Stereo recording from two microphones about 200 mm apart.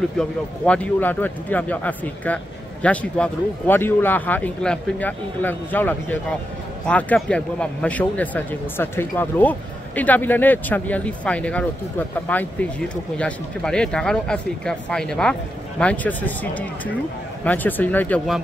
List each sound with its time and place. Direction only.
0.2 s a man's voice: 5° left (ahead or behind)